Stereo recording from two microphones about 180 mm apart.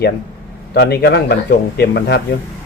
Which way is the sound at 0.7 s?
60° left (ahead or behind).